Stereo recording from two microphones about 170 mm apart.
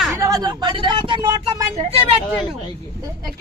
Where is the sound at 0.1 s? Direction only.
20° right (ahead or behind); by 1.9 s 35° right (ahead or behind).